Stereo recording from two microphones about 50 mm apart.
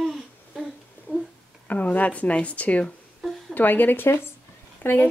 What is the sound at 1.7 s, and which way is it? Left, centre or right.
Speech, left.